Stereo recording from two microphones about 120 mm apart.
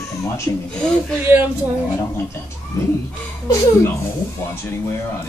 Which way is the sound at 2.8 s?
25° left (ahead or behind).